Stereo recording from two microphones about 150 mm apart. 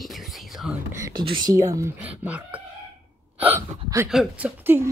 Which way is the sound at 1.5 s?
20° right (ahead or behind).